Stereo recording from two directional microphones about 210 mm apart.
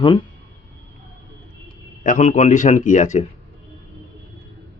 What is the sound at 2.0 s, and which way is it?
A man's voice, 35° left (ahead or behind).